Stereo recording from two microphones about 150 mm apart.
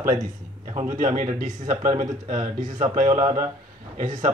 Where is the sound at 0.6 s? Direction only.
55° right (ahead or behind).